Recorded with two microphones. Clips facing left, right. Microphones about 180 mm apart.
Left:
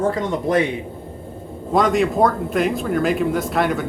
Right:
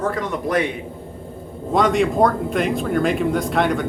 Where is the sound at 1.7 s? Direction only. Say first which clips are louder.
Even; centre (ahead or behind).